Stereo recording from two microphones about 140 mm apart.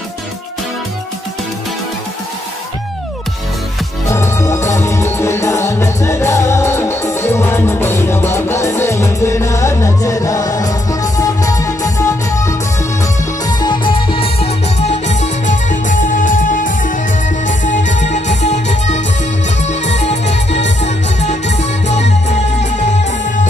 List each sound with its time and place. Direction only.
4.1 s music: 20° left (ahead or behind)
13.6 s music: 35° left (ahead or behind); by 22.0 s 55° left (ahead or behind)